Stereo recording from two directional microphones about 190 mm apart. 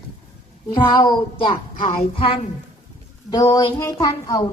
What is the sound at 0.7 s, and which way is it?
Child singing, 25° left (ahead or behind).